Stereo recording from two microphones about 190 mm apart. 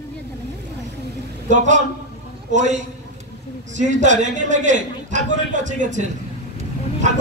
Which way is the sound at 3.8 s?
40° right (ahead or behind).